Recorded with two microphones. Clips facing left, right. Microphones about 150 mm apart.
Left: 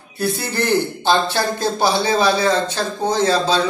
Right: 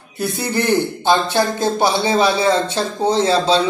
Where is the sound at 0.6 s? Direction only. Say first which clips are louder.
Right 2 dB; 20° right (ahead or behind).